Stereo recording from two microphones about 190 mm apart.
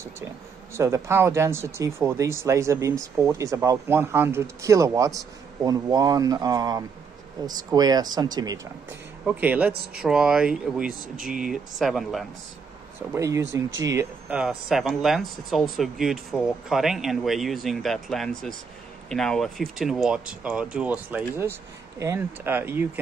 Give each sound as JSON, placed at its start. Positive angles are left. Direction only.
{"t": 0.7, "sound": "speech", "side_deg": -15}
{"t": 9.2, "sound": "speech", "side_deg": -5}
{"t": 13.1, "sound": "speech", "side_deg": -15}
{"t": 13.4, "sound": "speech", "side_deg": -85}
{"t": 13.8, "sound": "speech", "side_deg": -10}